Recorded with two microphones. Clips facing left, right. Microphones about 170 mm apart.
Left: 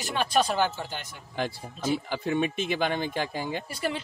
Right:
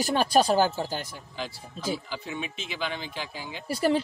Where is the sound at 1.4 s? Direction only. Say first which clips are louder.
Left 5 dB; 55° left (ahead or behind).